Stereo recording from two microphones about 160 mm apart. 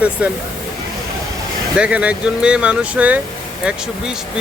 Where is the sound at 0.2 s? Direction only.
10° right (ahead or behind).